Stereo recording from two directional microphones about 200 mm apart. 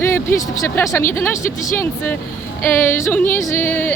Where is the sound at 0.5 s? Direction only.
15° left (ahead or behind).